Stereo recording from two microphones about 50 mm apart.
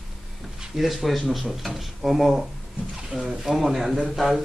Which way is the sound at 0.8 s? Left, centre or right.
Centre.